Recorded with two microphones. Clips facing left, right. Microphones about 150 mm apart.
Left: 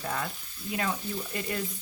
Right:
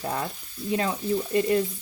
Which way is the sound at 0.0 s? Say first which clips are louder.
Right 4 dB; 25° right (ahead or behind).